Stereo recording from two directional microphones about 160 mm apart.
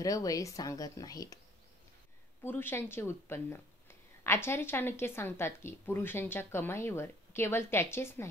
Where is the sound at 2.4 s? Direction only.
15° left (ahead or behind).